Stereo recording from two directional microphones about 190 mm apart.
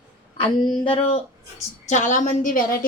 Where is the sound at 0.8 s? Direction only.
30° left (ahead or behind).